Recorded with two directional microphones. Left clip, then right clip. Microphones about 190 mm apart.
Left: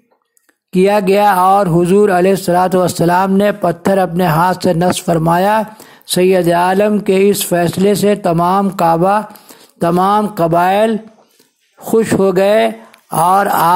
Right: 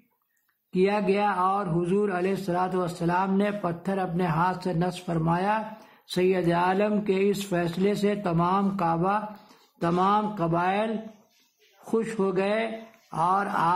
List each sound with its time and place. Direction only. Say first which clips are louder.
0.7 s speech: left 13 dB; 40° left (ahead or behind)